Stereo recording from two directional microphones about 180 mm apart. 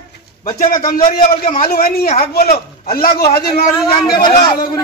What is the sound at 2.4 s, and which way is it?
A man's voice, 60° left (ahead or behind).